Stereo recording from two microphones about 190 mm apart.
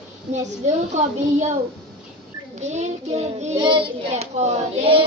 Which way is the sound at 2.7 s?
35° right (ahead or behind).